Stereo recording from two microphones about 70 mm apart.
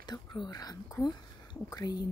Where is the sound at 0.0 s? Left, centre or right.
Left.